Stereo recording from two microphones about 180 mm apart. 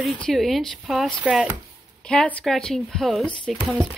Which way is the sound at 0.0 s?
Centre (ahead or behind).